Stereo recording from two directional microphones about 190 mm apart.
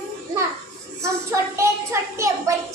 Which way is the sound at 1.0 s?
15° right (ahead or behind).